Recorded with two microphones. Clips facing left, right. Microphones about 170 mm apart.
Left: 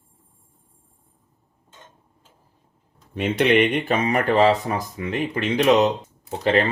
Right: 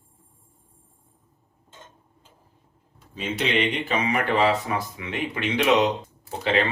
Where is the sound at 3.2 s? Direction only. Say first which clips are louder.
Left 7 dB; 55° left (ahead or behind).